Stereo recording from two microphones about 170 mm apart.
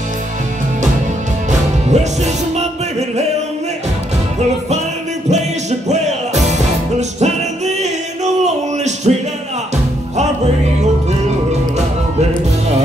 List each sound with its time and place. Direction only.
1.9 s music: 40° right (ahead or behind)
5.3 s music: 40° right (ahead or behind)
10.1 s music: 40° right (ahead or behind)